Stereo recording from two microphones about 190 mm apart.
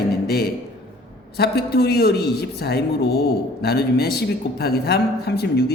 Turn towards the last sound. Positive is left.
turn(degrees=55)  # may be behind; listen again after turning